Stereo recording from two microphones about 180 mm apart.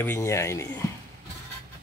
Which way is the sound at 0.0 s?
15° left (ahead or behind).